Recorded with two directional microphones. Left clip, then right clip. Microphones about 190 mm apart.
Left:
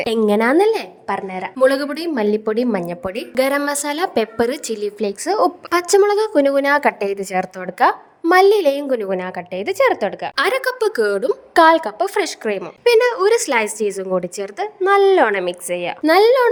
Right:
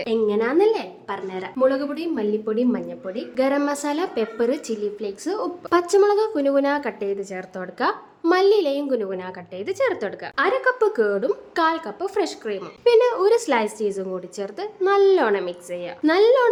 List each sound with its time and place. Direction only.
0.0 s a woman's voice: 50° left (ahead or behind); by 1.6 s 30° left (ahead or behind)
1.6 s a woman's voice: 45° left (ahead or behind); by 10.3 s 30° left (ahead or behind)
10.3 s a woman's voice: 55° left (ahead or behind); by 16.5 s 40° left (ahead or behind)